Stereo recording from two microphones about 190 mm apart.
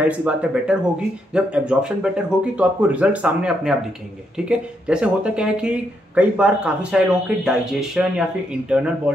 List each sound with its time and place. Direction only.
0.0 s speech: 5° right (ahead or behind)